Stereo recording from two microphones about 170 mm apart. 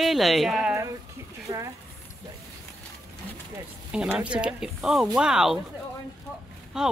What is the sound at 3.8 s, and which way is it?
Speech, 5° right (ahead or behind).